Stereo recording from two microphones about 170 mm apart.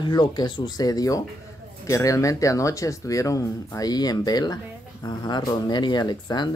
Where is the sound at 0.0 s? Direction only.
25° left (ahead or behind).